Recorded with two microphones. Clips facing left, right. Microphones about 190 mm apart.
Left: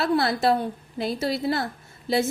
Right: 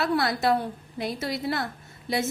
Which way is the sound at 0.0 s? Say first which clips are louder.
Left 3 dB; 30° left (ahead or behind).